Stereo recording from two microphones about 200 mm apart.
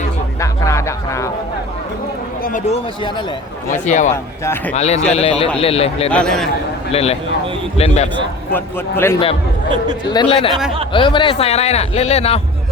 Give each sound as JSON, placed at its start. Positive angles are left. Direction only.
{"t": 0.3, "sound": "music", "side_deg": 15}
{"t": 2.4, "sound": "a man's voice", "side_deg": 35}
{"t": 4.1, "sound": "speech", "side_deg": 10}
{"t": 4.7, "sound": "a man's voice", "side_deg": 35}
{"t": 6.1, "sound": "a man's voice", "side_deg": 5}
{"t": 6.9, "sound": "a man's voice", "side_deg": 30}
{"t": 8.5, "sound": "speech", "side_deg": 10}
{"t": 10.1, "sound": "a man's voice", "side_deg": 25}